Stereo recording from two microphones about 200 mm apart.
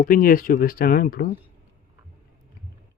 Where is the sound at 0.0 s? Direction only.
45° left (ahead or behind).